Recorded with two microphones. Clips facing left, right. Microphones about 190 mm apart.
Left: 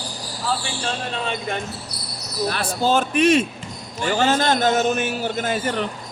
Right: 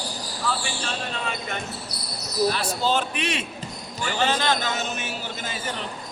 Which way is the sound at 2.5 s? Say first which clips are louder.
Left 4 dB; 50° left (ahead or behind).